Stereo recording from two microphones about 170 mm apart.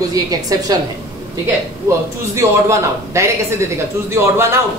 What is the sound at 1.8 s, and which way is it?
A man's voice, 15° right (ahead or behind).